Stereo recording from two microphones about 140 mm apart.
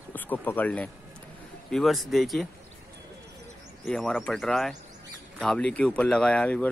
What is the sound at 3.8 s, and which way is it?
A man's voice, 5° left (ahead or behind).